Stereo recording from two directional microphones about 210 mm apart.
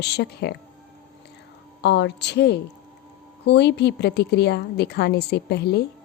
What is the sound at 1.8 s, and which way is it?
A woman's voice, 55° left (ahead or behind).